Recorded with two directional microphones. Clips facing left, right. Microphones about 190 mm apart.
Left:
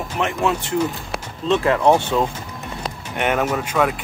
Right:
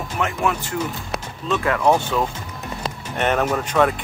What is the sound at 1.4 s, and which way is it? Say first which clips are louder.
Speech: left 3 dB; 25° left (ahead or behind).